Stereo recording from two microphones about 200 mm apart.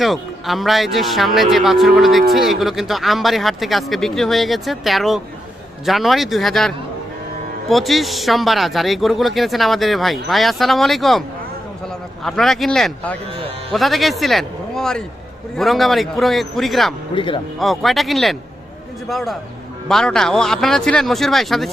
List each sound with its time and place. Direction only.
0.0 s speech: centre (ahead or behind)
12.2 s speech: centre (ahead or behind)
17.2 s speech: 25° left (ahead or behind)
17.6 s speech: centre (ahead or behind)